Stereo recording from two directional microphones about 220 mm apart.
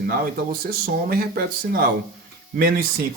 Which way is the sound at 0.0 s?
45° right (ahead or behind).